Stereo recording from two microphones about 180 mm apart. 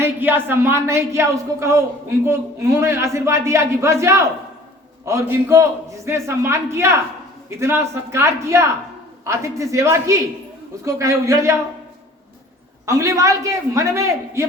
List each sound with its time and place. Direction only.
0.0 s speech: 10° right (ahead or behind)
12.8 s speech: 15° right (ahead or behind)